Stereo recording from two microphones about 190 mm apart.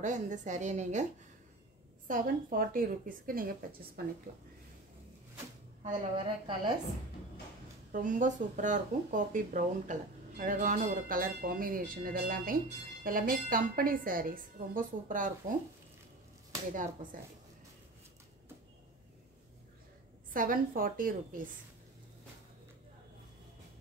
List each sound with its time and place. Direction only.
0.0 s a woman's voice: 40° right (ahead or behind)
2.0 s speech: 45° right (ahead or behind)
6.1 s a woman's voice: 25° right (ahead or behind)
7.9 s speech: 45° right (ahead or behind)
16.7 s speech: 45° right (ahead or behind)
20.3 s speech: 45° right (ahead or behind)